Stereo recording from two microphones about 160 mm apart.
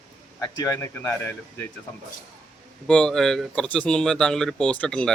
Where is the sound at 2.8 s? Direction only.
5° left (ahead or behind).